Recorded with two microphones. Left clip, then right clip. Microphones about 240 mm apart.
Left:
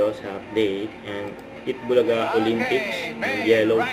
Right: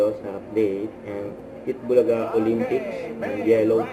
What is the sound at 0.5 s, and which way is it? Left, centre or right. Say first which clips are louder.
Speech: even; centre.